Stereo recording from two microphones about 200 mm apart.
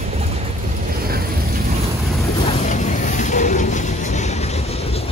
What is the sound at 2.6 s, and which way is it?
Vehicle, 40° left (ahead or behind).